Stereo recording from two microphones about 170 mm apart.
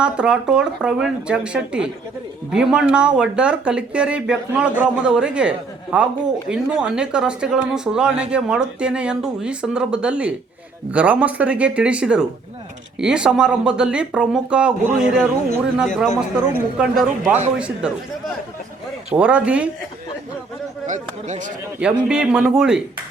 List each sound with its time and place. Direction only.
0.0 s speech: 5° right (ahead or behind)
19.1 s speech: 5° right (ahead or behind)
20.8 s speech: 45° right (ahead or behind)
21.8 s speech: 5° right (ahead or behind)